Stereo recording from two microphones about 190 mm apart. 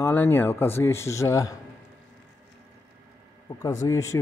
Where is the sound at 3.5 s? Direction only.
20° left (ahead or behind).